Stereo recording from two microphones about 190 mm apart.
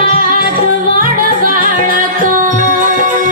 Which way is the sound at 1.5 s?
45° right (ahead or behind).